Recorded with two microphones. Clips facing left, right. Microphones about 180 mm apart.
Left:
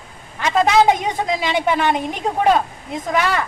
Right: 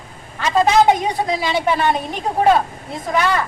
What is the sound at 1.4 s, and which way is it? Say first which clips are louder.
Speech: left 1 dB; 15° left (ahead or behind).